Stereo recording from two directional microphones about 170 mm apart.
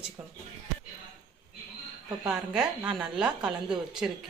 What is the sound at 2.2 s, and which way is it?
A woman's voice, 5° right (ahead or behind).